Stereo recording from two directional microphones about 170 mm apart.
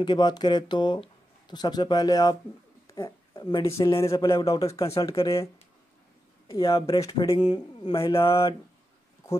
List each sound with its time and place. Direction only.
0.0 s speech: 25° left (ahead or behind)
4.8 s speech: 35° left (ahead or behind)
5.2 s speech: 20° left (ahead or behind)
6.4 s speech: 30° left (ahead or behind)